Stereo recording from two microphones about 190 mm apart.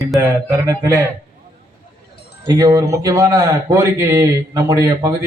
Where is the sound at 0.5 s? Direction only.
15° right (ahead or behind).